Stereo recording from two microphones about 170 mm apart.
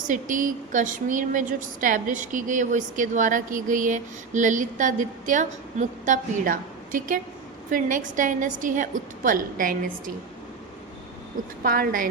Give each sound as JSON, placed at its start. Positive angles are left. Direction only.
{"t": 0.1, "sound": "a woman's voice", "side_deg": -50}
{"t": 11.6, "sound": "a woman's voice", "side_deg": -60}